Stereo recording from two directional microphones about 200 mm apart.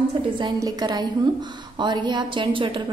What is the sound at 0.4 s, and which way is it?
A woman's voice, 20° right (ahead or behind).